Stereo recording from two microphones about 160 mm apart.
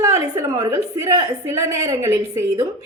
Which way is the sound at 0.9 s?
20° right (ahead or behind).